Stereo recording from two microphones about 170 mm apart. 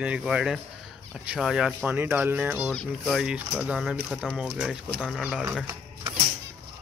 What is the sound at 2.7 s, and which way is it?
Speech, centre (ahead or behind).